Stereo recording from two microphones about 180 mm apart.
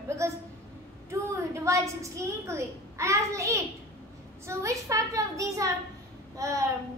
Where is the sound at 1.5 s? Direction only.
15° right (ahead or behind).